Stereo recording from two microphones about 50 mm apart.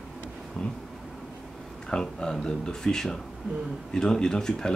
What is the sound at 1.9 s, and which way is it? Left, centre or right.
Speech, centre.